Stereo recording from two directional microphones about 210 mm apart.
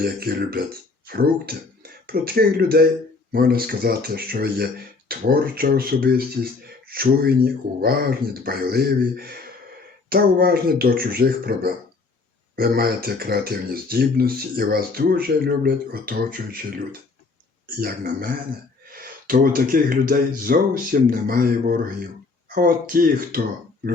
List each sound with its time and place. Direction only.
0.0 s speech: 45° right (ahead or behind)
17.7 s speech: 45° right (ahead or behind)